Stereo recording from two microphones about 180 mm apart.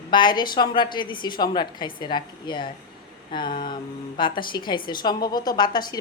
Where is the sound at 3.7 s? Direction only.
25° left (ahead or behind).